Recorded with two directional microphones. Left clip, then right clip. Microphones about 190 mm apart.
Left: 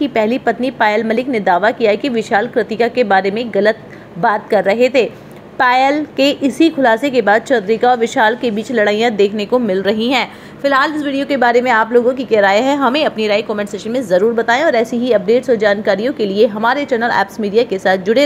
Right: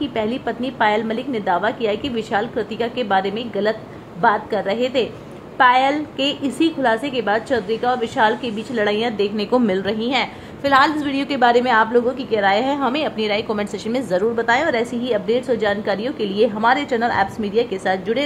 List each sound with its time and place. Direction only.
0.0 s a woman's voice: 15° left (ahead or behind)
9.9 s a woman's voice: 25° left (ahead or behind)
10.6 s a woman's voice: 10° left (ahead or behind)